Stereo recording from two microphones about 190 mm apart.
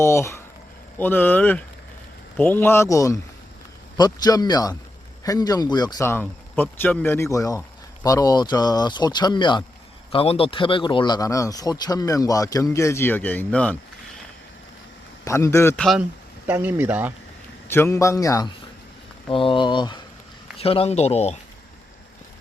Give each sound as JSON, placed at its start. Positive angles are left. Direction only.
{"t": 0.0, "sound": "speech", "side_deg": 15}
{"t": 15.2, "sound": "speech", "side_deg": 15}
{"t": 15.8, "sound": "speech", "side_deg": 0}
{"t": 17.7, "sound": "speech", "side_deg": 15}